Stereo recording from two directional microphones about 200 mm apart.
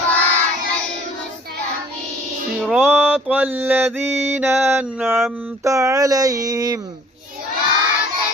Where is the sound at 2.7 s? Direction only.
10° right (ahead or behind).